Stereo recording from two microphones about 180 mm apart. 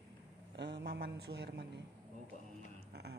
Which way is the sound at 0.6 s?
75° right (ahead or behind).